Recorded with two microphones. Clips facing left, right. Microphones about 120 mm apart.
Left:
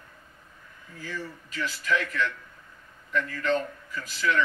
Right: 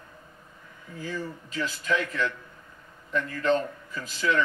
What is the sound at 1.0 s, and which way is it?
A woman's voice, 25° right (ahead or behind).